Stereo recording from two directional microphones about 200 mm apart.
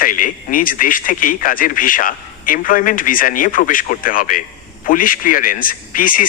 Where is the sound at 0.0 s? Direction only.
45° left (ahead or behind).